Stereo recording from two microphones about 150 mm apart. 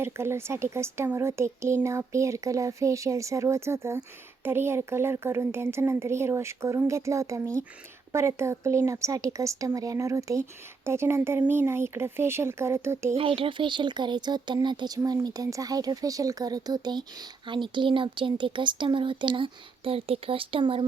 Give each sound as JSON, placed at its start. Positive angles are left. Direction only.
{"t": 0.0, "sound": "speech", "side_deg": -15}
{"t": 13.1, "sound": "speech", "side_deg": -35}